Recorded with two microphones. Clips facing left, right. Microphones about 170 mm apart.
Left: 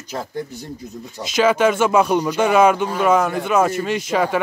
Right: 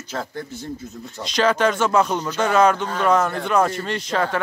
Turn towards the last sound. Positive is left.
turn(degrees=10)  # may be behind; listen again after turning